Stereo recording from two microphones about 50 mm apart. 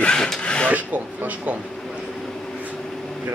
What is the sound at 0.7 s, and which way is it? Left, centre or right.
Speech, right.